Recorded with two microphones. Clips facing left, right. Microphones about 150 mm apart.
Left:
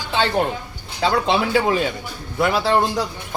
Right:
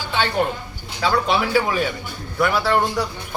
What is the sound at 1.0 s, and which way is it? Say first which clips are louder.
Speech: left 1 dB; 25° left (ahead or behind).